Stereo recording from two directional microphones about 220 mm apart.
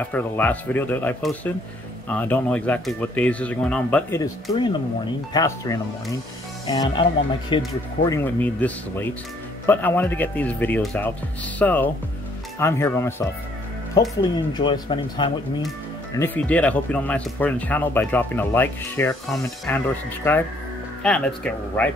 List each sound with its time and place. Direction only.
0.1 s speech: 5° left (ahead or behind)
8.2 s speech: 5° left (ahead or behind)
14.5 s speech: 20° left (ahead or behind)
16.2 s speech: 5° left (ahead or behind)